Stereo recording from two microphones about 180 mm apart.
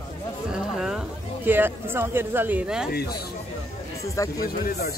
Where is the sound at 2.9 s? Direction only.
60° left (ahead or behind).